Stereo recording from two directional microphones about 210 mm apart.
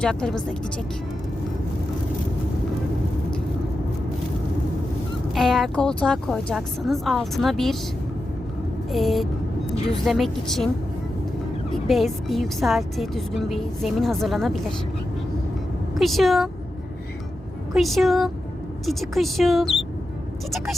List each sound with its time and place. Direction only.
0.0 s a woman's voice: 5° left (ahead or behind)
5.3 s a woman's voice: centre (ahead or behind)
8.9 s a woman's voice: centre (ahead or behind)
11.9 s a woman's voice: centre (ahead or behind)
16.0 s a woman's voice: centre (ahead or behind)
17.7 s a woman's voice: centre (ahead or behind)